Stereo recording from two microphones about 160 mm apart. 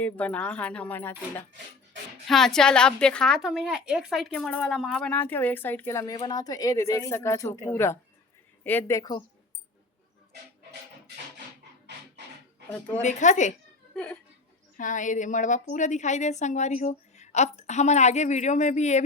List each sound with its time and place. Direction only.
0.0 s a woman's voice: 10° left (ahead or behind)
13.0 s a woman's voice: 50° left (ahead or behind)
13.9 s speech: 5° left (ahead or behind)
14.8 s a woman's voice: 55° left (ahead or behind)